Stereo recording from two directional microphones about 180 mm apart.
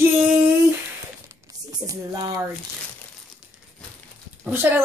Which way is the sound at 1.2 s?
20° right (ahead or behind).